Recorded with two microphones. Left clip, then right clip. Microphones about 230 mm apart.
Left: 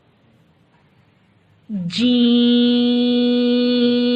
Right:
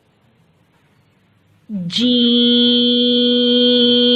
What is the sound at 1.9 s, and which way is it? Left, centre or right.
Mantra, centre.